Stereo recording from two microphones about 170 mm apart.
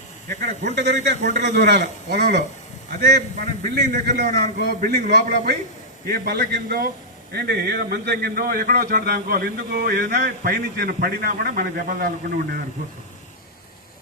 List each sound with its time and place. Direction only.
0.3 s a man's voice: 70° right (ahead or behind); by 1.8 s 90° right
1.8 s a man's voice: 70° right (ahead or behind); by 4.4 s 50° right (ahead or behind)
4.6 s a man's voice: 60° right (ahead or behind)